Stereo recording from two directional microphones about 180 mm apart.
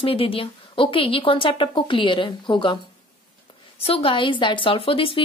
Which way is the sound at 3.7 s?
35° left (ahead or behind).